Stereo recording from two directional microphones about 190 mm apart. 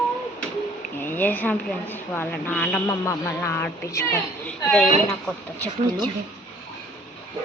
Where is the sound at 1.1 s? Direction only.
10° left (ahead or behind).